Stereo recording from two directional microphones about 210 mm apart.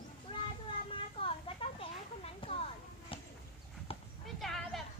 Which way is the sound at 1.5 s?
25° left (ahead or behind).